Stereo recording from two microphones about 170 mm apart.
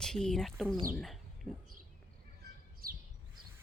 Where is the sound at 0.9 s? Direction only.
Centre (ahead or behind).